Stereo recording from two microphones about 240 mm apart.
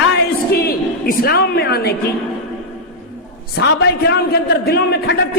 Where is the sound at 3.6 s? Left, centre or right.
Left.